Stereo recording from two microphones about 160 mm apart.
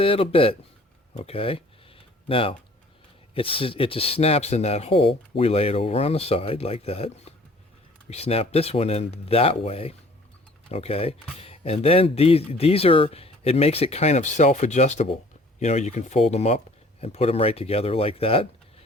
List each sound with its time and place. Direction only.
0.0 s speech: 35° left (ahead or behind)
1.1 s a sound: 35° left (ahead or behind)
3.3 s speech: 35° left (ahead or behind)